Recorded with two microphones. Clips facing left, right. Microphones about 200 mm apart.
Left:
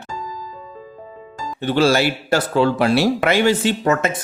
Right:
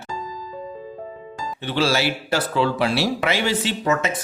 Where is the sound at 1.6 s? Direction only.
50° left (ahead or behind).